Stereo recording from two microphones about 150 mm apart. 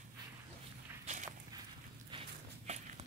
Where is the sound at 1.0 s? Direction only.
50° right (ahead or behind).